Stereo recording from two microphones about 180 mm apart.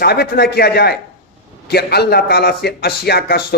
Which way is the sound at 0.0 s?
60° left (ahead or behind).